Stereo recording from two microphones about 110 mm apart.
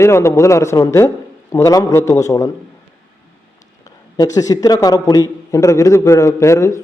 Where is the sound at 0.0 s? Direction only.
25° left (ahead or behind).